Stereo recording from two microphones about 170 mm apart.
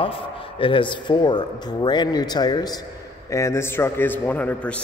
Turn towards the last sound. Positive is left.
turn(degrees=10)  # may be behind; listen again after turning